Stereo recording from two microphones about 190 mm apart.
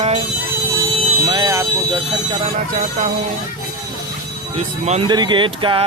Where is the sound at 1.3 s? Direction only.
20° right (ahead or behind).